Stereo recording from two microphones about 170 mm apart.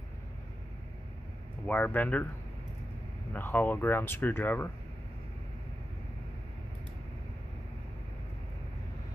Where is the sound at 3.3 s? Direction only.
10° left (ahead or behind).